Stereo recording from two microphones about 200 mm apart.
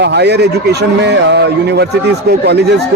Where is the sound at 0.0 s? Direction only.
55° right (ahead or behind).